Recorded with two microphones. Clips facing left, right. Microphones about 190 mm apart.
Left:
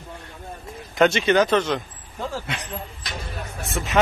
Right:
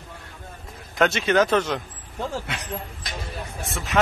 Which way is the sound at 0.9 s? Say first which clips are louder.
Left 2 dB; centre (ahead or behind).